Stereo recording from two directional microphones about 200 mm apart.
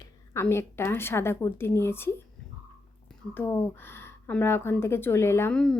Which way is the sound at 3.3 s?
10° left (ahead or behind).